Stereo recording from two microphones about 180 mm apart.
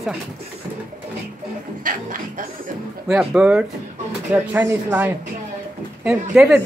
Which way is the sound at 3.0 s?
5° right (ahead or behind).